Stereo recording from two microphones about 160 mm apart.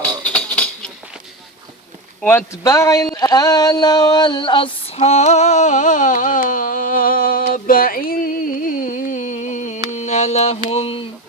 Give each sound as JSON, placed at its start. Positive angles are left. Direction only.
{"t": 0.3, "sound": "music", "side_deg": 10}
{"t": 2.2, "sound": "speech", "side_deg": 15}
{"t": 9.9, "sound": "mantra", "side_deg": 45}